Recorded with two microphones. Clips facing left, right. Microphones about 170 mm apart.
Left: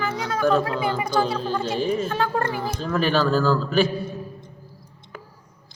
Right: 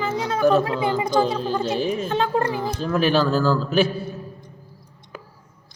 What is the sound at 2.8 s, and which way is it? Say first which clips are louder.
Speech: right 2 dB; 5° right (ahead or behind).